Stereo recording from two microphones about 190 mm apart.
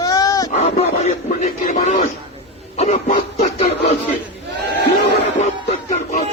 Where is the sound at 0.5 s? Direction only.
35° left (ahead or behind).